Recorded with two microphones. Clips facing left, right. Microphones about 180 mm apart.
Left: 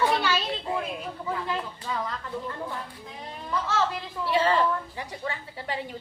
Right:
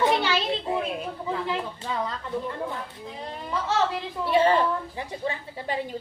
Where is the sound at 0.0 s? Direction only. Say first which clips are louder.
Right 2 dB; 20° right (ahead or behind).